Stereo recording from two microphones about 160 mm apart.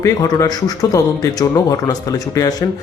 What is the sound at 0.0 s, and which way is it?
Speech, 20° left (ahead or behind).